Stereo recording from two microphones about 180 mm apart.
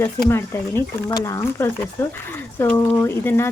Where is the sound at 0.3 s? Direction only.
15° left (ahead or behind).